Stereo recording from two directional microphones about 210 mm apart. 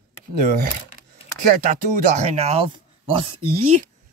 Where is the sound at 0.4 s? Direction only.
40° right (ahead or behind).